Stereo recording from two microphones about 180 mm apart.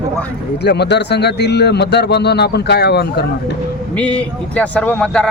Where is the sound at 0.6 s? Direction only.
65° left (ahead or behind).